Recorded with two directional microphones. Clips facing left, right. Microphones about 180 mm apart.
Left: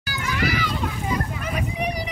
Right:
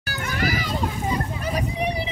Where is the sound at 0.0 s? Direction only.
50° right (ahead or behind).